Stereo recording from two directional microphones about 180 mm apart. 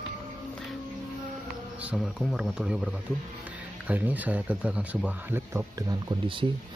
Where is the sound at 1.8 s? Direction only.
5° right (ahead or behind); by 6.4 s 25° right (ahead or behind).